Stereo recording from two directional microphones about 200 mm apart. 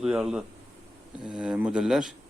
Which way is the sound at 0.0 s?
5° right (ahead or behind).